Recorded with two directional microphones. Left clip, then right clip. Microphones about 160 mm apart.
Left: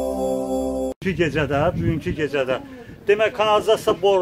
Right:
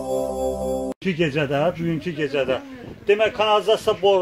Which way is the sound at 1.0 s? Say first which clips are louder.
Left 1 dB; 45° left (ahead or behind).